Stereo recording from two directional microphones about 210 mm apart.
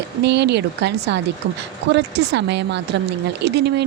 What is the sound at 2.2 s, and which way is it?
A woman's voice, 55° right (ahead or behind).